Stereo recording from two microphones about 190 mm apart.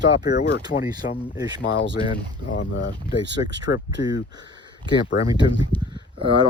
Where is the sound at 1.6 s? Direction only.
70° left (ahead or behind).